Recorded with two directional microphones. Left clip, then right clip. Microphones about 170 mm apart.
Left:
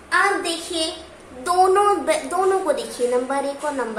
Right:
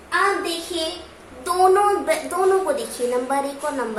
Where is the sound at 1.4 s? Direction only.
25° left (ahead or behind).